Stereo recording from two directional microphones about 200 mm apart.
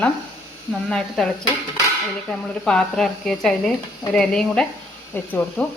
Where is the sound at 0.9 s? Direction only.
5° left (ahead or behind).